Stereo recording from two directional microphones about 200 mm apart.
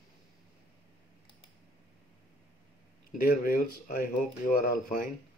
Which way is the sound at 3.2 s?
45° left (ahead or behind).